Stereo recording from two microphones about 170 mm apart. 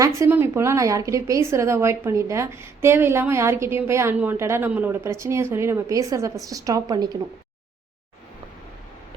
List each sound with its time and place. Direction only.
0.0 s a woman's voice: 15° right (ahead or behind)